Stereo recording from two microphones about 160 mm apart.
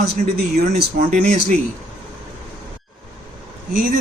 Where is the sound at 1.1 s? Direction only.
50° right (ahead or behind).